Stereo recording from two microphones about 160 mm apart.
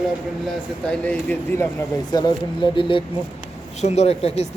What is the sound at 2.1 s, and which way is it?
Speech, 25° left (ahead or behind).